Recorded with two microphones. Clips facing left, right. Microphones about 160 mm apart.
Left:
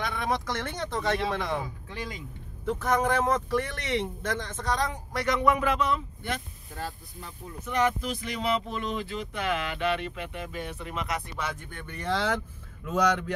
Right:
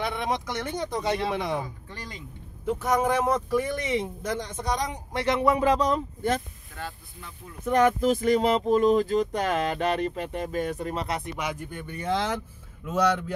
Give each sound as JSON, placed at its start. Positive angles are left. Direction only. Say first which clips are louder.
{"t": 0.0, "sound": "speech", "louder": "right 1 dB", "side_deg": -25}
{"t": 2.6, "sound": "speech", "louder": "right 2 dB", "side_deg": -10}
{"t": 7.6, "sound": "speech", "louder": "right 6 dB", "side_deg": -50}
{"t": 11.3, "sound": "speech", "louder": "right 3 dB", "side_deg": -10}